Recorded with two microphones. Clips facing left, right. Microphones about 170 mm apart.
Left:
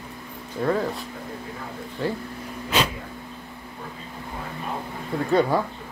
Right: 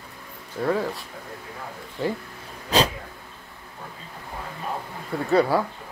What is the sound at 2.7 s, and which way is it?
Dog, 35° right (ahead or behind).